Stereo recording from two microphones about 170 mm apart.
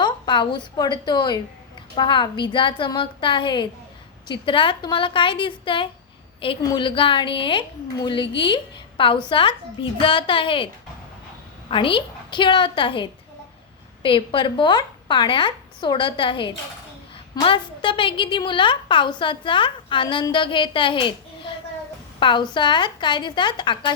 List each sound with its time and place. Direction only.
0.0 s a woman's voice: 25° left (ahead or behind)
11.7 s a woman's voice: 30° left (ahead or behind)